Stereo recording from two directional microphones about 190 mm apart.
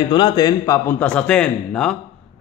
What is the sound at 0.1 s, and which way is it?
Speech, 20° left (ahead or behind).